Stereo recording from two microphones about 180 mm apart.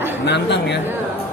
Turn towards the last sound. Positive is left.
turn(degrees=70)  # may be behind; listen again after turning